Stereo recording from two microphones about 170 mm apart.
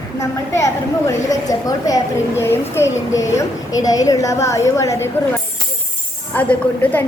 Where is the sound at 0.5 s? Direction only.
20° left (ahead or behind).